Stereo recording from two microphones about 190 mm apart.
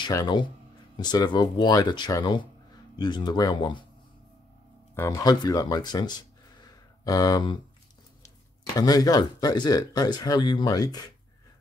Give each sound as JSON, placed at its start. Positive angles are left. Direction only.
{"t": 0.0, "sound": "speech", "side_deg": 20}
{"t": 4.9, "sound": "speech", "side_deg": 15}
{"t": 8.7, "sound": "speech", "side_deg": 20}